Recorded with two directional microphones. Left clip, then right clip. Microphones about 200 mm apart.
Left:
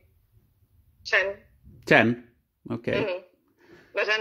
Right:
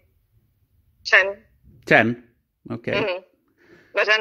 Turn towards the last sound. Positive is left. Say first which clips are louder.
# right 6 dB
turn(degrees=-50)  # may be behind; listen again after turning